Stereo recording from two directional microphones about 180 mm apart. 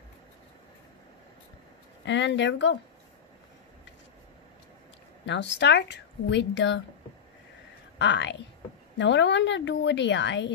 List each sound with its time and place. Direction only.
2.0 s speech: 80° left
5.2 s speech: 80° left
8.0 s a woman's voice: 80° left